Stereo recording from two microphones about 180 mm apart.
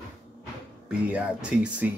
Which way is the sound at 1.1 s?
5° right (ahead or behind).